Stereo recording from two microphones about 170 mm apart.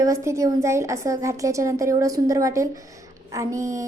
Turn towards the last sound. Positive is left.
turn(degrees=-20)  # may be behind; listen again after turning